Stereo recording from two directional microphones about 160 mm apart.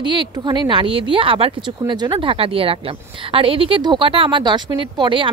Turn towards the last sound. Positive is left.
turn(degrees=-30)  # may be behind; listen again after turning